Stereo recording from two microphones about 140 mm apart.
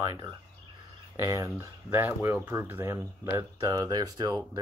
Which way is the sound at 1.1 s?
25° right (ahead or behind).